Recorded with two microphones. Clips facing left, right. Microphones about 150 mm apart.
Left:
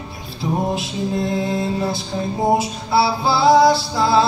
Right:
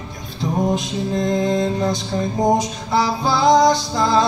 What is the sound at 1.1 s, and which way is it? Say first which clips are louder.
Mantra: right 3 dB; 5° left (ahead or behind).